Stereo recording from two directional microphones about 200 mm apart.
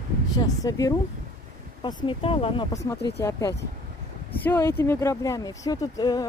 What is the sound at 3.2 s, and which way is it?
Speech, 15° left (ahead or behind).